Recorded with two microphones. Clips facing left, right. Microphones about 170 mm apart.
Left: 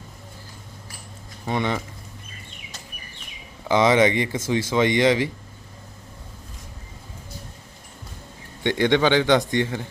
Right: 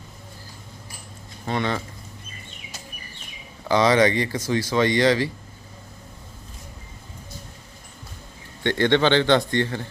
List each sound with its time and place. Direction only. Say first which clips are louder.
1.5 s a man's voice: left 1 dB; 15° left (ahead or behind)
3.7 s speech: even; 20° left (ahead or behind)
8.6 s a man's voice: even; 15° left (ahead or behind)